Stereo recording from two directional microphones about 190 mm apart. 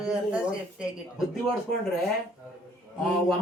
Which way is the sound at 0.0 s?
5° right (ahead or behind).